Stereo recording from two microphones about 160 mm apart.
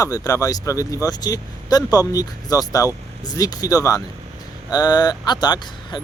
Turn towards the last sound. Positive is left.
turn(degrees=25)  # may be behind; listen again after turning